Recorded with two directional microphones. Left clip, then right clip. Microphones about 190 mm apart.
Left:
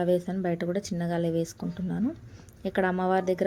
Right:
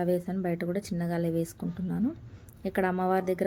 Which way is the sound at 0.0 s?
Centre (ahead or behind).